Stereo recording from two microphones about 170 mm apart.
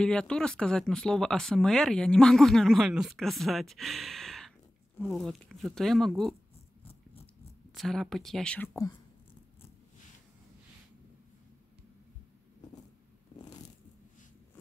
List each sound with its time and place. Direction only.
0.0 s speech: 5° left (ahead or behind)
7.7 s speech: centre (ahead or behind)
13.4 s a sound: 25° left (ahead or behind)